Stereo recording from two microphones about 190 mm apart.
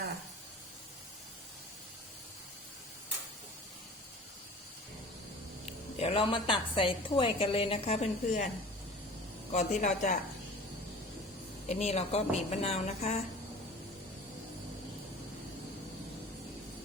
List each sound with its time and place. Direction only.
6.0 s a woman's voice: 30° left (ahead or behind)
9.5 s a woman's voice: 35° left (ahead or behind)
11.7 s a woman's voice: 35° left (ahead or behind)